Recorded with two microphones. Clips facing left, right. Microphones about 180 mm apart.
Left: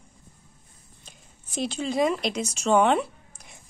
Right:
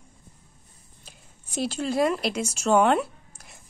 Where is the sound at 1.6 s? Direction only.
5° right (ahead or behind).